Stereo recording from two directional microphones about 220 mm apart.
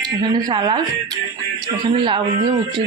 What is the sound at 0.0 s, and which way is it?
Speech, 20° right (ahead or behind).